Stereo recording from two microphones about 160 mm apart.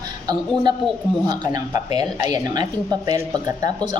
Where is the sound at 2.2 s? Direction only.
25° right (ahead or behind).